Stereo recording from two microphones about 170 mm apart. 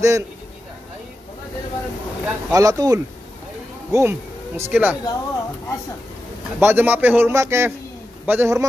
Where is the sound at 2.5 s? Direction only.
20° right (ahead or behind).